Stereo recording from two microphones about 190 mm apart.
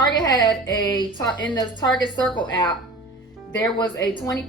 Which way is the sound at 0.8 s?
20° left (ahead or behind).